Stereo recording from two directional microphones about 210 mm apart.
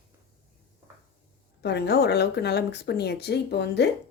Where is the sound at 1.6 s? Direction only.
50° left (ahead or behind).